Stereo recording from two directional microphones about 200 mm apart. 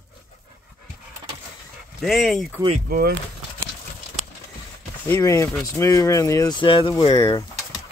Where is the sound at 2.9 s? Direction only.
50° right (ahead or behind).